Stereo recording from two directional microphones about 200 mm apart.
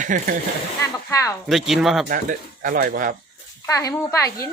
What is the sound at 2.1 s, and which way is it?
Speech, 40° right (ahead or behind).